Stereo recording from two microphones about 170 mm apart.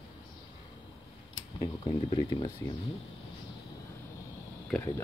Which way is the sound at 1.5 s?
25° left (ahead or behind).